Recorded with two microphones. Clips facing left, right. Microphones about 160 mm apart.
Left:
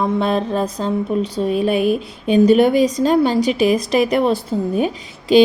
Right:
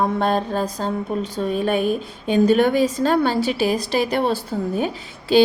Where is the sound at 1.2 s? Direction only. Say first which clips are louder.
Left 4 dB; 10° left (ahead or behind).